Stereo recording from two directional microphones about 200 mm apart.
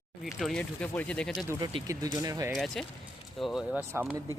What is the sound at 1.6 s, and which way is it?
Speech, 20° right (ahead or behind).